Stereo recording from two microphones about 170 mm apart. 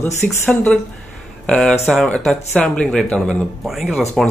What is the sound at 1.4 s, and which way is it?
Speech, 5° left (ahead or behind).